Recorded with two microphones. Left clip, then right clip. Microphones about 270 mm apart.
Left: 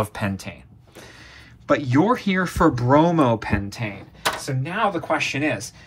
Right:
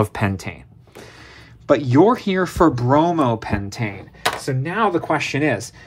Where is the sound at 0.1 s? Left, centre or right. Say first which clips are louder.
Right 4 dB; right.